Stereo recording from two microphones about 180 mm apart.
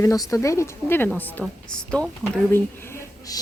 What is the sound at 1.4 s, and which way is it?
Speech, 5° left (ahead or behind).